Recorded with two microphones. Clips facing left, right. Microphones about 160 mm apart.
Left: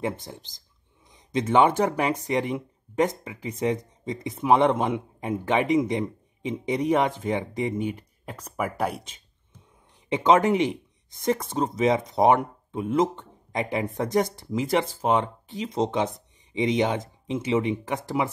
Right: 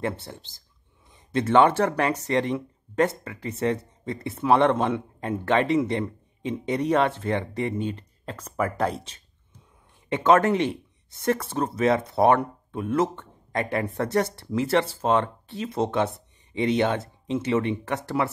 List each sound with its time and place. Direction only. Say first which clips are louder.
0.0 s speech: even; 15° left (ahead or behind)